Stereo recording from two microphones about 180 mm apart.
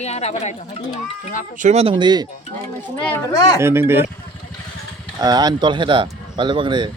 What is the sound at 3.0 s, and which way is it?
Speech, 10° left (ahead or behind).